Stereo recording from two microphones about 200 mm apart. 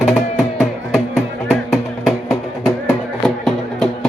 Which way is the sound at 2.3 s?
15° left (ahead or behind).